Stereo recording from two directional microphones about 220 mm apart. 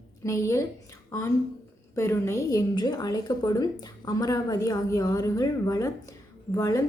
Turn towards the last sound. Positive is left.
turn(degrees=15)  # may be behind; listen again after turning